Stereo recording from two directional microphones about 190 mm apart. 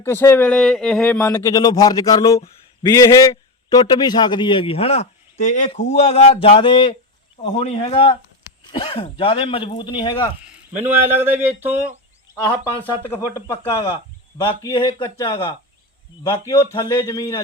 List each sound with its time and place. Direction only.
0.0 s speech: 10° left (ahead or behind)
10.7 s speech: 10° right (ahead or behind)
12.5 s speech: 10° left (ahead or behind)